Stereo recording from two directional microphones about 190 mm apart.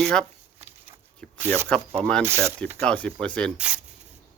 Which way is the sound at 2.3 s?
15° right (ahead or behind).